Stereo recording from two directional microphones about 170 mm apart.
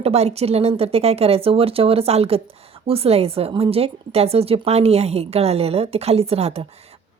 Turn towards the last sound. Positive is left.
turn(degrees=-35)  # may be behind; listen again after turning